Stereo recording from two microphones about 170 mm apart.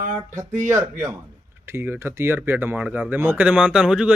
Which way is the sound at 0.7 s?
15° right (ahead or behind).